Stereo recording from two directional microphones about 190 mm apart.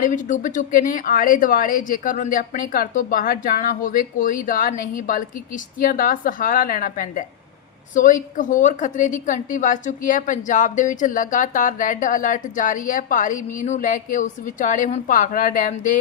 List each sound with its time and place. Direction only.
0.0 s a woman's voice: 40° left (ahead or behind)